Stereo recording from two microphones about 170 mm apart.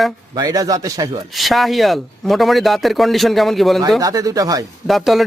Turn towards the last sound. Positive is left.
turn(degrees=0)  # may be behind; listen again after turning